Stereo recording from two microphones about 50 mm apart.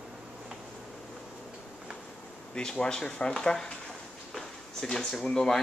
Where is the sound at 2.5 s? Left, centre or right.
Centre.